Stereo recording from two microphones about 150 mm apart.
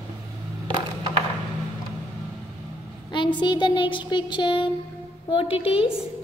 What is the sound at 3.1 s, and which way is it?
Speech, 30° left (ahead or behind).